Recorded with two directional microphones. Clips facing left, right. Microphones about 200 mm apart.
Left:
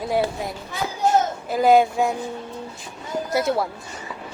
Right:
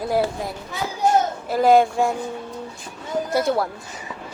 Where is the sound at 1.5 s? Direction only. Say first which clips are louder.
Right 1 dB; centre (ahead or behind).